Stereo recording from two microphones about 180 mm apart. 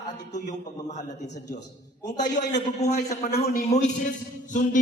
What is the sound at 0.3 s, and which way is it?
Speech, 40° left (ahead or behind).